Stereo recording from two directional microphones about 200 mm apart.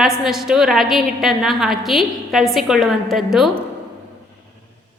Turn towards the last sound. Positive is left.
turn(degrees=0)  # may be behind; listen again after turning